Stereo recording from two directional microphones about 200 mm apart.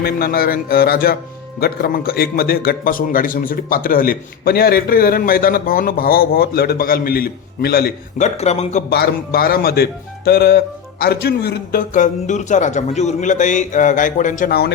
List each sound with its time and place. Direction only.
0.0 s speech: 50° left (ahead or behind)
8.4 s a man's voice: 35° left (ahead or behind)
8.9 s a man's voice: 50° left (ahead or behind)